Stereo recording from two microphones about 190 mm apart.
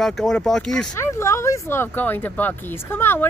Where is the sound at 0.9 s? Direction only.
15° left (ahead or behind).